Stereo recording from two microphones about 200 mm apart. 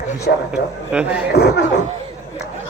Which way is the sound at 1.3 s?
55° left (ahead or behind).